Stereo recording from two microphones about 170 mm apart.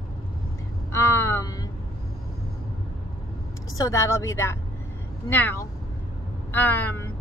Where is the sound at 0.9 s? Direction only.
15° left (ahead or behind).